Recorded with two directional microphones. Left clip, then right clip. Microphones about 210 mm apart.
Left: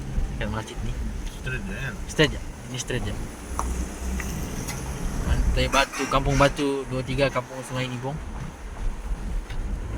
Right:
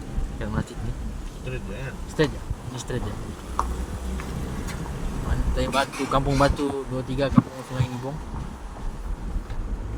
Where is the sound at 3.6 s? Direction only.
35° left (ahead or behind).